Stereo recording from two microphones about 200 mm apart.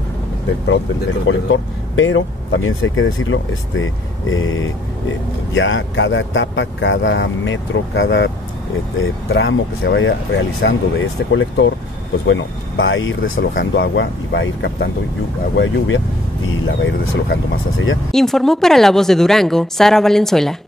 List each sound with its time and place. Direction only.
1.2 s speech: 75° left (ahead or behind); by 4.6 s 90° left
5.5 s speech: 70° left (ahead or behind)
9.3 s speech: 65° left (ahead or behind)
16.6 s speech: 80° left
18.1 s a woman's voice: centre (ahead or behind)